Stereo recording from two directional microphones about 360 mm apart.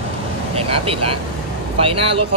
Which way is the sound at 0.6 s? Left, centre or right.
Centre.